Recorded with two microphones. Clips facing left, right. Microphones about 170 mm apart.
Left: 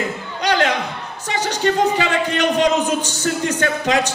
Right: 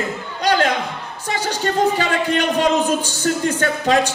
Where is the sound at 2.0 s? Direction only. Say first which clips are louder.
Even; 45° right (ahead or behind).